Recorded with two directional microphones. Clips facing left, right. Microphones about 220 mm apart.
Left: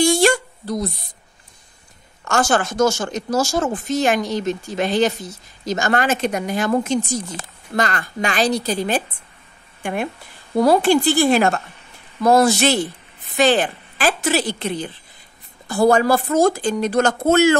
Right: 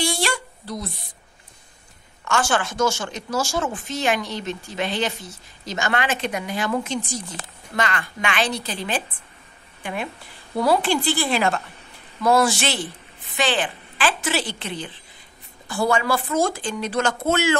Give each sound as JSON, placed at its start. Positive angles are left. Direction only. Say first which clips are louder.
{"t": 0.0, "sound": "a sound", "louder": "left 9 dB", "side_deg": 45}
{"t": 2.2, "sound": "speech", "louder": "left 4 dB", "side_deg": 40}
{"t": 10.5, "sound": "a woman's voice", "louder": "left 6 dB", "side_deg": 45}